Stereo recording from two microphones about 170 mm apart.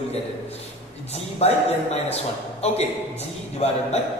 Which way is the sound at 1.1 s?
40° left (ahead or behind).